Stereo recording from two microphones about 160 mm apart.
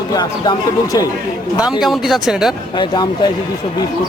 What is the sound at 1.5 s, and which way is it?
Speech, 25° left (ahead or behind).